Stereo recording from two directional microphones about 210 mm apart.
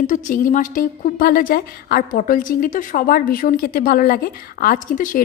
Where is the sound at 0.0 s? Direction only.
40° left (ahead or behind).